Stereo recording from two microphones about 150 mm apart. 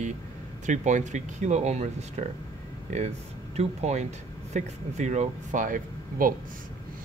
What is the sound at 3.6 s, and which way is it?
Speech, 45° right (ahead or behind).